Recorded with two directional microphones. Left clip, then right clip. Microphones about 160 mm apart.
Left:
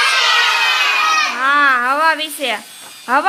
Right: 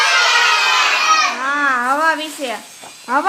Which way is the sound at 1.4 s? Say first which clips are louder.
Left 4 dB; 10° left (ahead or behind).